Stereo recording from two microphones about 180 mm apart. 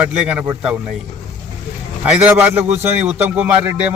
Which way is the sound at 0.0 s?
5° right (ahead or behind).